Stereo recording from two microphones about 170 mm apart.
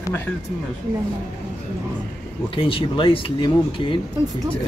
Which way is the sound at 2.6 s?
30° left (ahead or behind).